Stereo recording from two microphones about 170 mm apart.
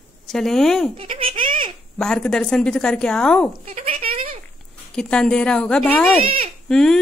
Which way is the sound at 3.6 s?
45° right (ahead or behind).